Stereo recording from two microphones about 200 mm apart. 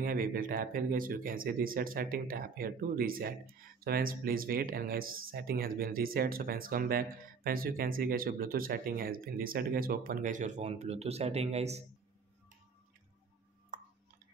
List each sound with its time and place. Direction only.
0.0 s speech: 45° right (ahead or behind)